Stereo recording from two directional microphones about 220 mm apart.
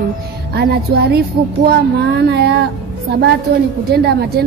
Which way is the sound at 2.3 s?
50° right (ahead or behind).